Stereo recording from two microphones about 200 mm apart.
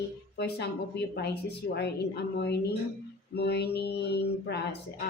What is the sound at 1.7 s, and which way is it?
A woman's voice, 55° left (ahead or behind).